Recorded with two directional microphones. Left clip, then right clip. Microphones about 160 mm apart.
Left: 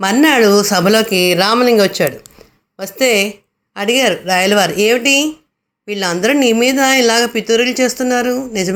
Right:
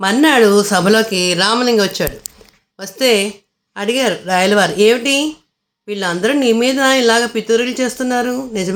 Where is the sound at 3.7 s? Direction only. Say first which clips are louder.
Left 3 dB; 5° right (ahead or behind).